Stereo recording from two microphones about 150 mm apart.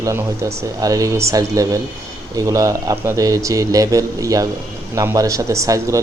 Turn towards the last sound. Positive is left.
turn(degrees=-20)  # may be behind; listen again after turning